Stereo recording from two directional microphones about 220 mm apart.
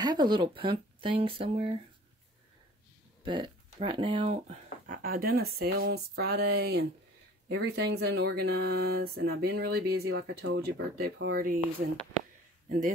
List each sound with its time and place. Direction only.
0.0 s speech: 20° right (ahead or behind)
3.3 s speech: 20° right (ahead or behind); by 12.9 s 35° right (ahead or behind)